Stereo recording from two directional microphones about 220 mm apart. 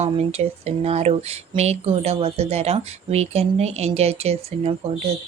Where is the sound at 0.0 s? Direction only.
30° right (ahead or behind).